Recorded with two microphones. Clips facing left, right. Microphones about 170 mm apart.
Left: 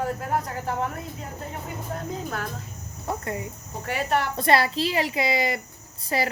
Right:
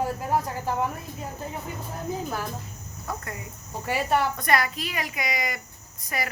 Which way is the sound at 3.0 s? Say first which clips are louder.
Left 5 dB; 25° left (ahead or behind).